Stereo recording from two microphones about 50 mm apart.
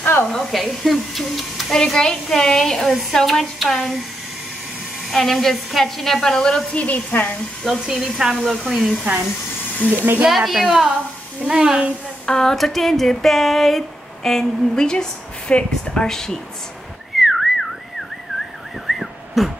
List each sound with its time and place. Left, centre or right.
0.3 s a woman's voice: centre
1.8 s a woman's voice: centre
5.1 s a woman's voice: centre
6.7 s a woman's voice: left
7.7 s a woman's voice: centre
9.9 s speech: right
10.2 s a woman's voice: centre
12.3 s speech: centre
17.2 s whistling: centre
18.9 s a sound: centre